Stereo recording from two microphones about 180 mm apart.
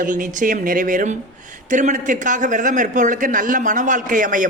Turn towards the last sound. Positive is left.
turn(degrees=-45)  # may be behind; listen again after turning